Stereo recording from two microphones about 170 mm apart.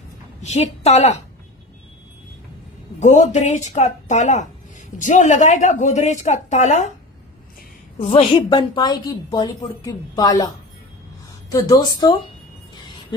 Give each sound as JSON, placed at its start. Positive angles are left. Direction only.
{"t": 0.4, "sound": "a woman's voice", "side_deg": 40}
{"t": 3.0, "sound": "a woman's voice", "side_deg": 45}
{"t": 8.0, "sound": "a woman's voice", "side_deg": 35}
{"t": 11.5, "sound": "a woman's voice", "side_deg": 20}